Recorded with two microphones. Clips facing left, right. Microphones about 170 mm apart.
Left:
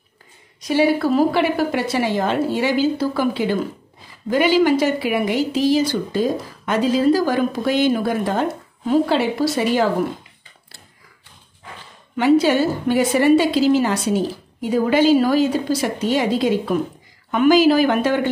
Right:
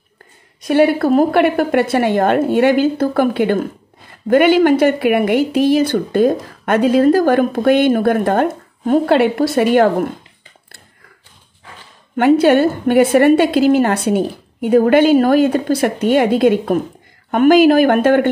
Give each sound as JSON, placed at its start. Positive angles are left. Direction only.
{"t": 0.6, "sound": "a woman's voice", "side_deg": -55}
{"t": 12.2, "sound": "a woman's voice", "side_deg": -55}